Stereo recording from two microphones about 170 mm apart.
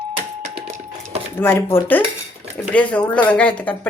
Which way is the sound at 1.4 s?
15° left (ahead or behind).